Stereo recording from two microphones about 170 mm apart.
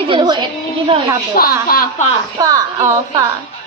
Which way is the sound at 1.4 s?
60° left (ahead or behind).